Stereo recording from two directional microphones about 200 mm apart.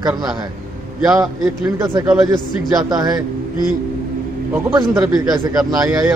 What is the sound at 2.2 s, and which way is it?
Speech, 20° right (ahead or behind).